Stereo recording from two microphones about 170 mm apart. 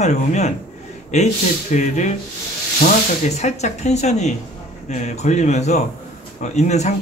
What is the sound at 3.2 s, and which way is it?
Speech, 40° left (ahead or behind).